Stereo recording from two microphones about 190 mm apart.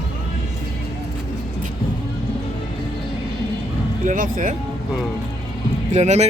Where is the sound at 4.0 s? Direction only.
45° right (ahead or behind).